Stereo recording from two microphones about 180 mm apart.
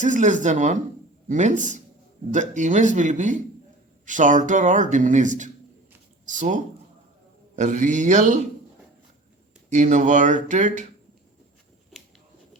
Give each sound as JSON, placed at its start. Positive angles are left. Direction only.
{"t": 0.0, "sound": "speech", "side_deg": -45}
{"t": 9.6, "sound": "speech", "side_deg": -40}